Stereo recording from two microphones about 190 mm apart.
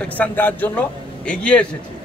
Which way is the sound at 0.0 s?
10° left (ahead or behind).